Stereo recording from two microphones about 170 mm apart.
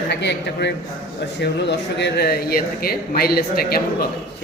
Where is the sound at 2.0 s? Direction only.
80° left; by 3.7 s 65° left (ahead or behind).